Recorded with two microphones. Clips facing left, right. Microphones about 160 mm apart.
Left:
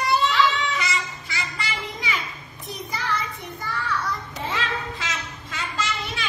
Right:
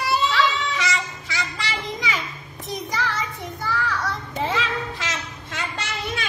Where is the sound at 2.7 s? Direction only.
90° right.